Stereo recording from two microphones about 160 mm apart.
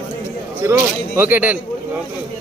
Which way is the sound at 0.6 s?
10° right (ahead or behind).